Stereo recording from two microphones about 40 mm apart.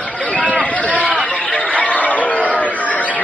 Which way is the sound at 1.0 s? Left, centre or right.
Right.